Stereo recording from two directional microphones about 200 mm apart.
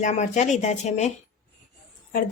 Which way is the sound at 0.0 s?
35° left (ahead or behind).